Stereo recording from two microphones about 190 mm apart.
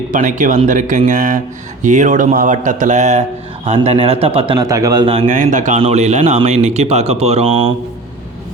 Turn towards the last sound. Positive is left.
turn(degrees=-30)  # may be behind; listen again after turning